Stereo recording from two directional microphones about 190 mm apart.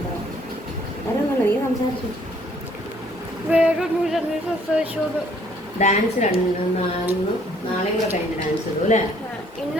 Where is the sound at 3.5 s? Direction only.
5° right (ahead or behind).